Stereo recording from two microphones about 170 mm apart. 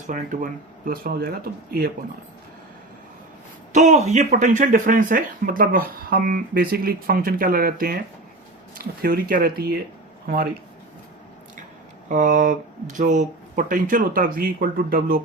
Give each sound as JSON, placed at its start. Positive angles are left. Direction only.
{"t": 0.1, "sound": "speech", "side_deg": -50}
{"t": 3.7, "sound": "speech", "side_deg": -45}
{"t": 12.0, "sound": "speech", "side_deg": -50}